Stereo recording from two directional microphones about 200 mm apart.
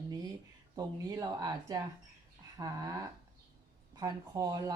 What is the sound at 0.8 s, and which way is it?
Speech, 20° right (ahead or behind).